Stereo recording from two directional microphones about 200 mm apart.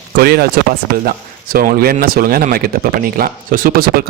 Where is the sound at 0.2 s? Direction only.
50° right (ahead or behind).